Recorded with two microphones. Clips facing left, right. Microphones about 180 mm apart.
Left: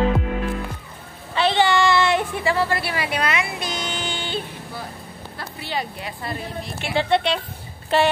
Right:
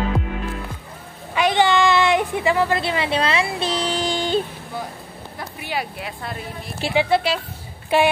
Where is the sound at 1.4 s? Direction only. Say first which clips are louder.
Right 1 dB; 15° right (ahead or behind); by 4.4 s 40° right (ahead or behind).